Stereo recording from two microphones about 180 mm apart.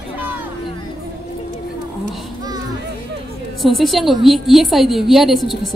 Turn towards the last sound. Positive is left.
turn(degrees=0)  # may be behind; listen again after turning